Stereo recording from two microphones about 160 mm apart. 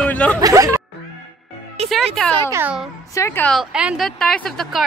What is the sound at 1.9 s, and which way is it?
Speech, centre (ahead or behind).